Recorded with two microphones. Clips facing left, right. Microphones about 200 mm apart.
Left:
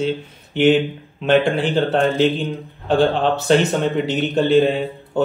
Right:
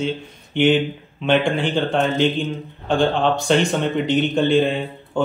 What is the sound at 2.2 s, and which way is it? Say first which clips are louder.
Speech: left 2 dB; 5° left (ahead or behind).